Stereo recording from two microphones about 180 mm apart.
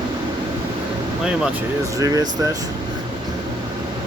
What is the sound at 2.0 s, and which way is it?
Speech, 20° right (ahead or behind).